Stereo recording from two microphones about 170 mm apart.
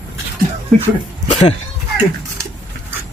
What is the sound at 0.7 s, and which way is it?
Speech, centre (ahead or behind).